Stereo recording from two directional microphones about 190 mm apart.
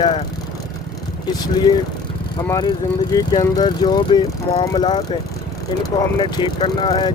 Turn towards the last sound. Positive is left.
turn(degrees=25)  # may be behind; listen again after turning